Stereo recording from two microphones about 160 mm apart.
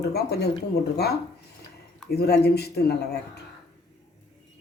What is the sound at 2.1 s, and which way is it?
Speech, 85° left.